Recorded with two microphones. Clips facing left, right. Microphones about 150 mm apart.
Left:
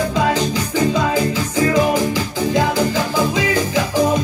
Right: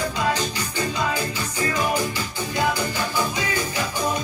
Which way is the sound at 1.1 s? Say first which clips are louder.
Left 8 dB; 90° left.